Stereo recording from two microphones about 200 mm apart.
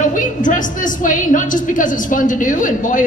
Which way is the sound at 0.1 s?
40° left (ahead or behind).